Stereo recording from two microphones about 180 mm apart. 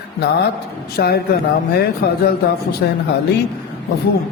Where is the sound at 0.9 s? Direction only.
60° left (ahead or behind).